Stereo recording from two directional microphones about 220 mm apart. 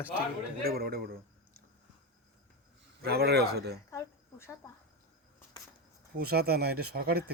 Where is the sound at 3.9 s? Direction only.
15° left (ahead or behind).